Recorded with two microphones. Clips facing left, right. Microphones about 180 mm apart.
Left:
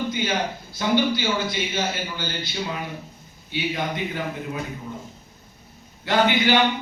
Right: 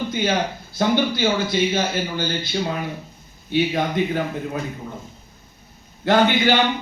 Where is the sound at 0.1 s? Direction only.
55° right (ahead or behind).